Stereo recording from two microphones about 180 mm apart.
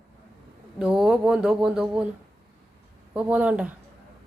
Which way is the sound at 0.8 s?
5° right (ahead or behind).